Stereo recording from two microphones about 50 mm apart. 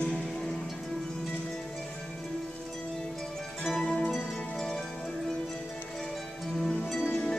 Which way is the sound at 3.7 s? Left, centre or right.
Centre.